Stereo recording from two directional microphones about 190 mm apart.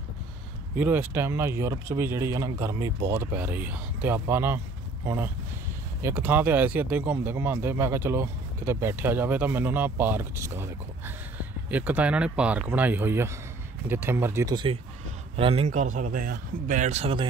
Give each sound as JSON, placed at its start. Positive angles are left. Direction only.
{"t": 0.7, "sound": "speech", "side_deg": -10}